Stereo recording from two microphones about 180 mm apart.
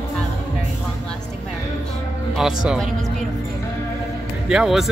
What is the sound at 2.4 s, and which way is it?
Speech, 5° right (ahead or behind).